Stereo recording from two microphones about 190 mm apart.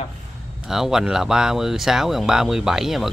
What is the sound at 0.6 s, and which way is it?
Speech, centre (ahead or behind).